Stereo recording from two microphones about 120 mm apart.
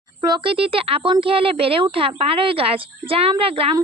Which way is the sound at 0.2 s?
40° right (ahead or behind).